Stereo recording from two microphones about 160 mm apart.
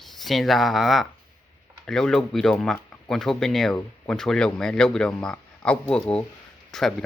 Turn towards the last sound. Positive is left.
turn(degrees=5)  # may be behind; listen again after turning